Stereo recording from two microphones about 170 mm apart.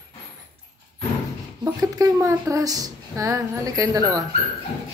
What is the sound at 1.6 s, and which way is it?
Speech, 20° right (ahead or behind).